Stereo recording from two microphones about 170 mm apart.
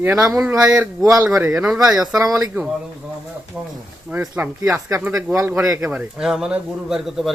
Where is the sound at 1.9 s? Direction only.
20° right (ahead or behind).